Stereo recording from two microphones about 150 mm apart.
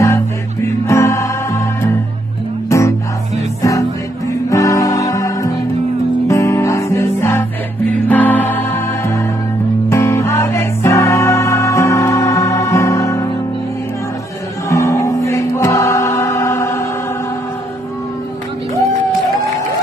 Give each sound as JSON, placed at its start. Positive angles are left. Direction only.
{"t": 0.8, "sound": "music", "side_deg": 20}
{"t": 4.3, "sound": "music", "side_deg": 20}
{"t": 14.7, "sound": "choir", "side_deg": 20}